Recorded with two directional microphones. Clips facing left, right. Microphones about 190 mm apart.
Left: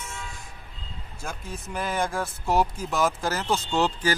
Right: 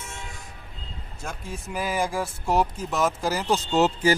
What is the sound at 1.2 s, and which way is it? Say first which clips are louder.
Speech: right 1 dB; centre (ahead or behind).